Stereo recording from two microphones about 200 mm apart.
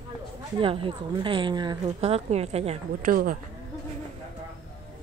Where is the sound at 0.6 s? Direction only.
25° right (ahead or behind).